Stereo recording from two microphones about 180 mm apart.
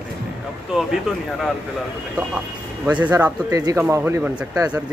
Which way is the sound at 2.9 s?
10° right (ahead or behind).